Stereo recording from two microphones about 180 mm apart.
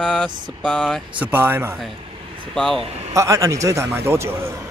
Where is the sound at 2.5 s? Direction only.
5° left (ahead or behind).